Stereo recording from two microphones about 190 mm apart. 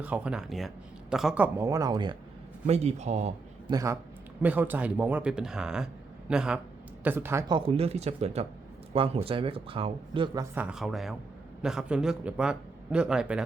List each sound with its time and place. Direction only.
0.0 s speech: 5° right (ahead or behind); by 2.1 s 25° right (ahead or behind)
2.6 s speech: 35° right (ahead or behind)
3.7 s speech: 20° right (ahead or behind)
10.5 s speech: 5° right (ahead or behind)